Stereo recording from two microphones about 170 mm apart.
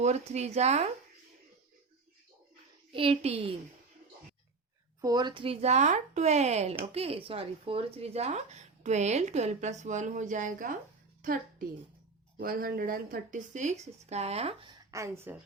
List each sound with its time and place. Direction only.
0.0 s speech: 40° right (ahead or behind)
2.9 s speech: 35° right (ahead or behind)
4.9 s speech: 25° right (ahead or behind); by 10.8 s 50° right (ahead or behind)
12.4 s speech: 55° right (ahead or behind); by 14.8 s 35° right (ahead or behind)
14.8 s speech: 15° right (ahead or behind)